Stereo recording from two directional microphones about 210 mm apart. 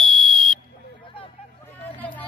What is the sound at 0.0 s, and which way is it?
Fire alarm, centre (ahead or behind).